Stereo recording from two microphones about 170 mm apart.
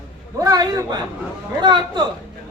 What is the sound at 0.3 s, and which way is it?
A man's voice, 20° right (ahead or behind).